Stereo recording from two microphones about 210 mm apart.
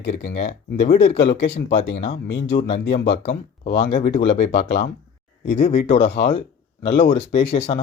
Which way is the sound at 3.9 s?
30° left (ahead or behind).